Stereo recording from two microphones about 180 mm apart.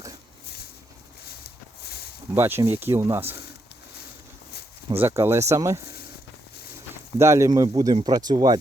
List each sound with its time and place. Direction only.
0.4 s a sound: 60° left (ahead or behind)
2.3 s speech: 15° right (ahead or behind)
4.9 s speech: 15° right (ahead or behind)
7.2 s speech: 15° right (ahead or behind)